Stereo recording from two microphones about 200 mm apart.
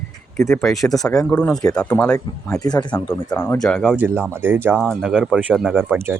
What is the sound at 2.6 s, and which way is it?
Speech, 20° left (ahead or behind).